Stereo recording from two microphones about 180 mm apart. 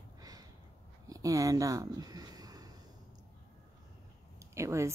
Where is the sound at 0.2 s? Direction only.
20° right (ahead or behind).